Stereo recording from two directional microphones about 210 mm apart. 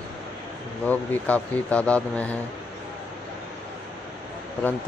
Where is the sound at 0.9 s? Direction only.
5° left (ahead or behind).